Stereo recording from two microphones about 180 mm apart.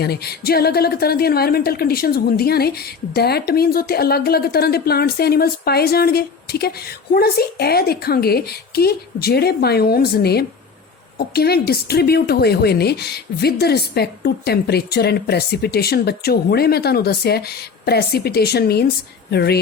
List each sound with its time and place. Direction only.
0.0 s a woman's voice: 60° left (ahead or behind)